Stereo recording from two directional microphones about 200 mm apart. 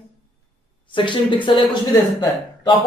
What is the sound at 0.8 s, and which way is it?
Speech, 25° left (ahead or behind).